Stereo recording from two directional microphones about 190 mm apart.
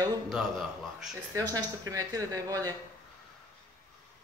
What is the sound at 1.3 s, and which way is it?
Speech, 20° right (ahead or behind).